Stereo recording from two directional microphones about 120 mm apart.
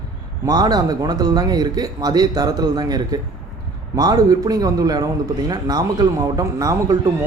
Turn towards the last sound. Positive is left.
turn(degrees=-30)  # may be behind; listen again after turning